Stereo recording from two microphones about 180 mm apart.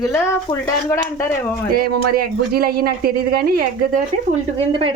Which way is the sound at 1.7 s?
55° right (ahead or behind).